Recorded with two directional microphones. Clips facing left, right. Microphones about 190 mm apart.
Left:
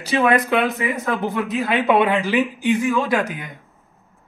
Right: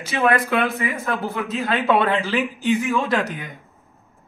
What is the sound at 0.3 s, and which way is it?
A man's voice, 20° left (ahead or behind).